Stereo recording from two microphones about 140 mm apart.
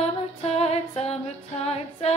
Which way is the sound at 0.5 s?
50° left (ahead or behind).